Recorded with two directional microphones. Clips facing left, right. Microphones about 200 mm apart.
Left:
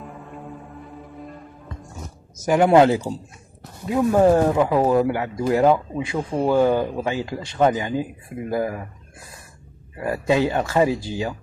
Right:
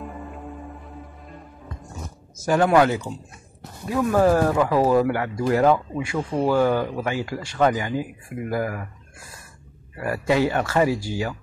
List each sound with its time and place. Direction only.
0.0 s music: centre (ahead or behind)
2.4 s speech: 20° left (ahead or behind)
3.9 s speech: 20° left (ahead or behind)
9.9 s speech: 20° left (ahead or behind)